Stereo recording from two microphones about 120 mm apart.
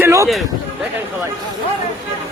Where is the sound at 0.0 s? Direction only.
25° right (ahead or behind).